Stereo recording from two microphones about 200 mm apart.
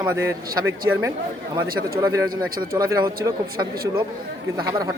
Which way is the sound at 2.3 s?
45° right (ahead or behind).